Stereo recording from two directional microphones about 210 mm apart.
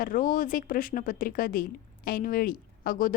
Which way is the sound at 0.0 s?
40° left (ahead or behind).